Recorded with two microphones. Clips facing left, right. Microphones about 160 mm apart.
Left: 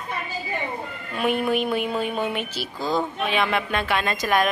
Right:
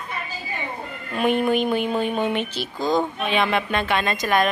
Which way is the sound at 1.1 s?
5° left (ahead or behind).